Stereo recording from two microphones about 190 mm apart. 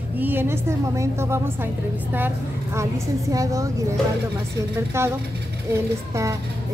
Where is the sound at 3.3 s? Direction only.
15° right (ahead or behind).